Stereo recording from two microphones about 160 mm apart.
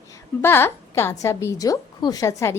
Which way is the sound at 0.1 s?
15° left (ahead or behind).